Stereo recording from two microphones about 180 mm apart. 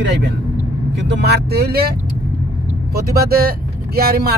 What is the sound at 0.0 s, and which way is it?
Speech, 70° right (ahead or behind).